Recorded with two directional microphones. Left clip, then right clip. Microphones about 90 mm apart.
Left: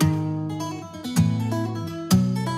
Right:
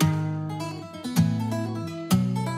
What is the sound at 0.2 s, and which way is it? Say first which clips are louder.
Music: left 4 dB; 25° right (ahead or behind).